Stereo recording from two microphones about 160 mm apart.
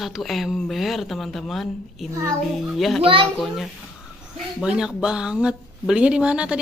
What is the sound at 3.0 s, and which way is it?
Speech, 35° right (ahead or behind).